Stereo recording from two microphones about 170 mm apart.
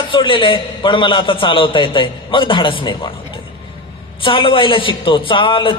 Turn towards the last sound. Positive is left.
turn(degrees=30)  # may be behind; listen again after turning